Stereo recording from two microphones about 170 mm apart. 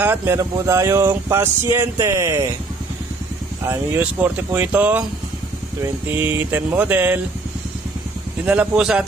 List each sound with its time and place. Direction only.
0.0 s speech: 15° right (ahead or behind)
3.6 s speech: 10° right (ahead or behind)
8.5 s speech: 5° right (ahead or behind)